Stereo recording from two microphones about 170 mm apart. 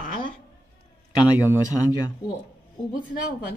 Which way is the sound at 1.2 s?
10° right (ahead or behind).